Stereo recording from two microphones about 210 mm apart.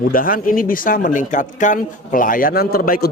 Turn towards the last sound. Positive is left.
turn(degrees=45)  # may be behind; listen again after turning